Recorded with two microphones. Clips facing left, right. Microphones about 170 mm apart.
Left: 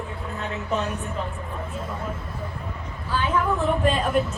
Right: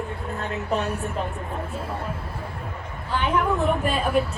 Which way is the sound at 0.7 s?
30° right (ahead or behind).